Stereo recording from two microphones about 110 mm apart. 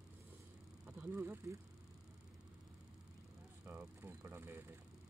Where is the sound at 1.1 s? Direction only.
20° right (ahead or behind).